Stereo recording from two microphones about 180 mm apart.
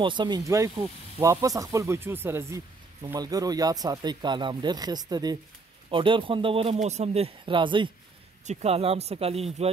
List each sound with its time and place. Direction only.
0.0 s speech: 25° right (ahead or behind)